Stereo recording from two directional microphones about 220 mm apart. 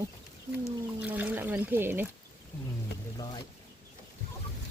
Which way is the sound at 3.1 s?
20° left (ahead or behind).